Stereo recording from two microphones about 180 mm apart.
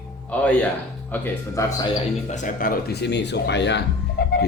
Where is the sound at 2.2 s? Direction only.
45° left (ahead or behind).